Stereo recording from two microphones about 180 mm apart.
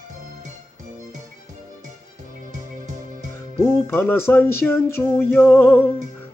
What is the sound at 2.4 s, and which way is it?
Music, 45° right (ahead or behind).